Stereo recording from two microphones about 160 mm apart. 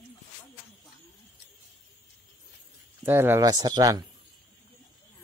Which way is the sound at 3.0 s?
15° right (ahead or behind).